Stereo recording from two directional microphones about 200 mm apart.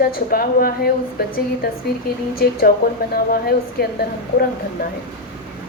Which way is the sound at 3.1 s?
50° left (ahead or behind).